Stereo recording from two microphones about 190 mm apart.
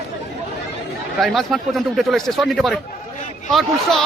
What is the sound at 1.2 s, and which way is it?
A man's voice, centre (ahead or behind).